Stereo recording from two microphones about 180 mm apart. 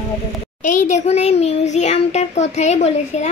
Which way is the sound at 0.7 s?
40° left (ahead or behind).